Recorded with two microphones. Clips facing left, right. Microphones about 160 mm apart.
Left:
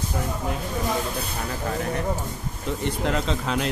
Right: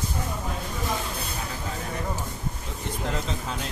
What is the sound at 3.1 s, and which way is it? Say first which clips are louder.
Speech: left 6 dB; 80° left.